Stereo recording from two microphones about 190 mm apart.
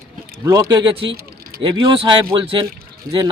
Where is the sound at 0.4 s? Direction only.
20° right (ahead or behind).